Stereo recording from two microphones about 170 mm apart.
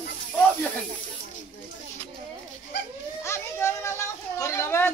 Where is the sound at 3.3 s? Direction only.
15° left (ahead or behind).